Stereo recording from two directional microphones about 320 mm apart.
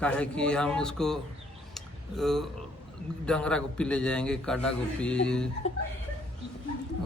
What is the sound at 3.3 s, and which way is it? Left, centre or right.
A man's voice, centre.